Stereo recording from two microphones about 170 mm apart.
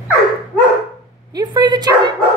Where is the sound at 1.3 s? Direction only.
25° right (ahead or behind).